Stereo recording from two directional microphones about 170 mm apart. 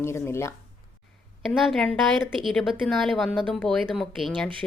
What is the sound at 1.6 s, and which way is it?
A woman's voice, centre (ahead or behind).